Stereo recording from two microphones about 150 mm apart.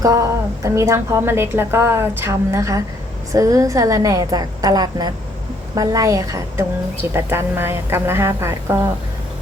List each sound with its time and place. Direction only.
0.0 s a woman's voice: 20° right (ahead or behind)